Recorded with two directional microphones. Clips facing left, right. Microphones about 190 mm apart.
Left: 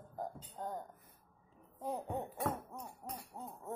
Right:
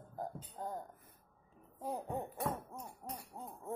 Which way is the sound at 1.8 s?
Centre (ahead or behind).